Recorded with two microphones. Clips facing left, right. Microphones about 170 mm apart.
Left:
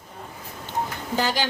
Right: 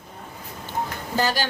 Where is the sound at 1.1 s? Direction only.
15° left (ahead or behind).